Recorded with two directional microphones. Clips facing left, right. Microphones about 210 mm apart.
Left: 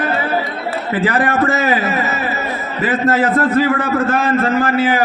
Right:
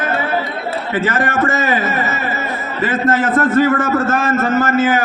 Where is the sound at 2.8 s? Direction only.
45° right (ahead or behind).